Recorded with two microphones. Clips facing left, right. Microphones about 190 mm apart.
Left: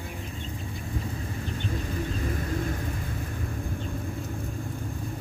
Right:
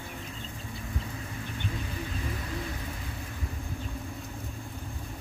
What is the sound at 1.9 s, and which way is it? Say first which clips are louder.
Vehicle: left 5 dB; 45° left (ahead or behind).